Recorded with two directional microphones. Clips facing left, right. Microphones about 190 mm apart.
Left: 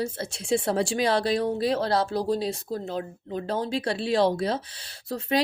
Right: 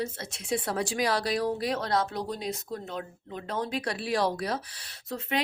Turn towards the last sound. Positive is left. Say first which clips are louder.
# left 5 dB
turn(degrees=35)  # may be behind; listen again after turning